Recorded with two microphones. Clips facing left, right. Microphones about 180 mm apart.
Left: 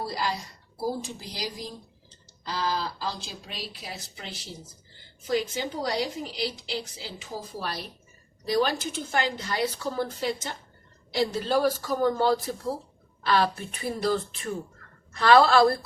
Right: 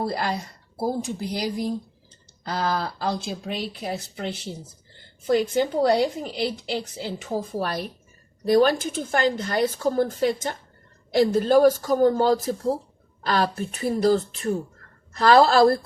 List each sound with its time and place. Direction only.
0.0 s a woman's voice: 55° right (ahead or behind)